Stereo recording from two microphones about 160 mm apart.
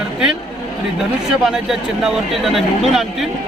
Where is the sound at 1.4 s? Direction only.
5° right (ahead or behind).